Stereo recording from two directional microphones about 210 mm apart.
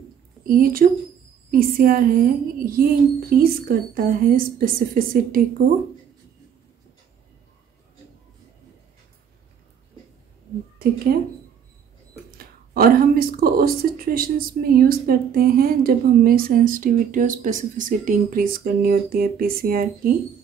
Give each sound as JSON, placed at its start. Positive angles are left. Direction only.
{"t": 0.5, "sound": "speech", "side_deg": -45}
{"t": 11.1, "sound": "speech", "side_deg": -45}
{"t": 12.4, "sound": "speech", "side_deg": -45}